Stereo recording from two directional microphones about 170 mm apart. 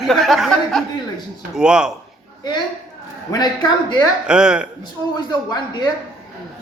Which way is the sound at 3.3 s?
25° left (ahead or behind).